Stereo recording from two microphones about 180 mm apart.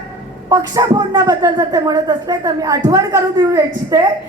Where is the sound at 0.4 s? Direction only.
20° right (ahead or behind).